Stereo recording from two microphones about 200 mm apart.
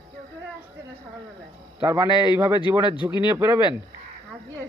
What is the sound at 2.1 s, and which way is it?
Speech, 20° left (ahead or behind).